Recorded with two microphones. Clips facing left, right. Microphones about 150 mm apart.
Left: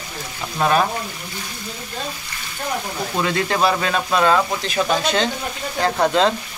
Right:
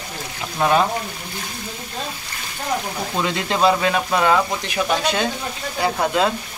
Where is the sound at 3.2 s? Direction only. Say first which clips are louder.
Right 1 dB; 20° right (ahead or behind).